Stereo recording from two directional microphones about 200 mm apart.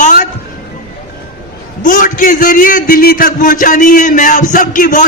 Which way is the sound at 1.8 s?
40° left (ahead or behind).